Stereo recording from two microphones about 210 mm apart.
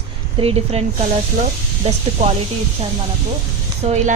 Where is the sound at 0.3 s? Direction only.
30° right (ahead or behind).